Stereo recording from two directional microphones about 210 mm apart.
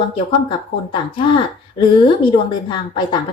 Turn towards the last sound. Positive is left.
turn(degrees=20)  # may be behind; listen again after turning